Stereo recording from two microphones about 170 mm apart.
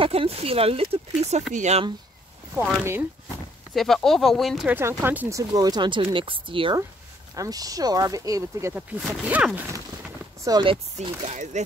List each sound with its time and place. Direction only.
0.0 s speech: 35° right (ahead or behind)
2.5 s speech: 10° right (ahead or behind)
3.7 s speech: centre (ahead or behind)
4.7 s speech: 10° right (ahead or behind)
5.5 s speech: 25° right (ahead or behind)
9.0 s speech: 5° right (ahead or behind)
10.4 s speech: 25° right (ahead or behind); by 11.6 s 45° right (ahead or behind)